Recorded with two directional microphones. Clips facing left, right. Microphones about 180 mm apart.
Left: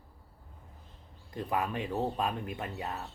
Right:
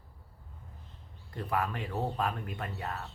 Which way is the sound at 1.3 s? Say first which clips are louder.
Left 1 dB; 20° left (ahead or behind).